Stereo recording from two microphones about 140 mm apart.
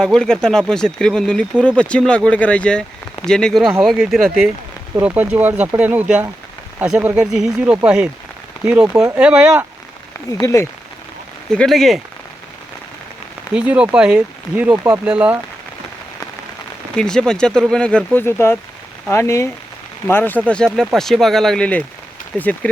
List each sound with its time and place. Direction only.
0.0 s speech: 5° left (ahead or behind); by 9.1 s 20° right (ahead or behind)
9.1 s speech: 10° right (ahead or behind)
10.3 s speech: 25° left (ahead or behind)
11.5 s speech: 5° left (ahead or behind)
13.5 s speech: 10° right (ahead or behind)
16.9 s speech: 5° left (ahead or behind)